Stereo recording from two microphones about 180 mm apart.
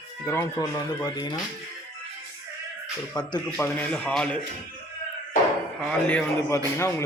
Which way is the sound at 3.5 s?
10° left (ahead or behind).